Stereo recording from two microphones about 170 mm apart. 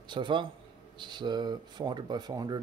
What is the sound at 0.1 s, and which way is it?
Speech, 30° right (ahead or behind).